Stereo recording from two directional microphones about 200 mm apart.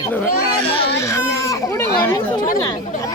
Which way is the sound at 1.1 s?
15° left (ahead or behind).